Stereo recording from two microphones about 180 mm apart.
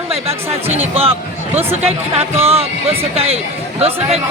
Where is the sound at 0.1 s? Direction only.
35° right (ahead or behind).